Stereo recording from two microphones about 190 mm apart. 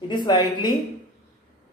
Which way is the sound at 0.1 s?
25° left (ahead or behind).